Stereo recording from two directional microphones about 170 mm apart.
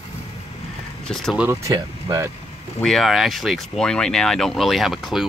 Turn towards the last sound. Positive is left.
turn(degrees=0)  # may be behind; listen again after turning